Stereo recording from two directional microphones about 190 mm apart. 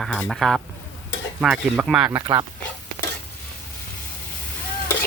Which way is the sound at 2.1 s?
15° right (ahead or behind).